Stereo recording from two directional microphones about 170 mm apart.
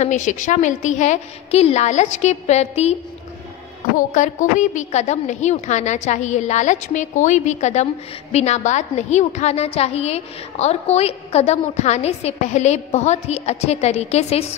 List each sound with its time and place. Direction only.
0.0 s a woman's voice: 45° left (ahead or behind)